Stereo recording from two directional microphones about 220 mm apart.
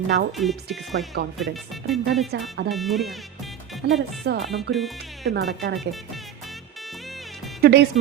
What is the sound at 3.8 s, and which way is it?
Speech, 50° right (ahead or behind).